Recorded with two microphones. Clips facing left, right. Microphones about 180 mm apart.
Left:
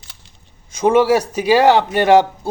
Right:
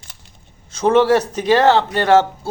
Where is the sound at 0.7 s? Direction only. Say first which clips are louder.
Even; 10° left (ahead or behind).